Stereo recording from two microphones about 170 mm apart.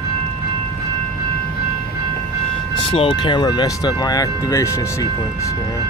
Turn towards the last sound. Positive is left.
turn(degrees=15)  # may be behind; listen again after turning